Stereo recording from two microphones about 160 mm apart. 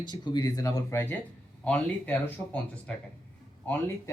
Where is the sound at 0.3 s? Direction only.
25° left (ahead or behind).